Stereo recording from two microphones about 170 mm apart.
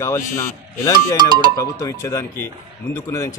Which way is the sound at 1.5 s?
20° left (ahead or behind).